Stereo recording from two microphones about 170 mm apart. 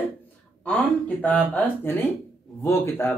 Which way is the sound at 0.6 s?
5° left (ahead or behind).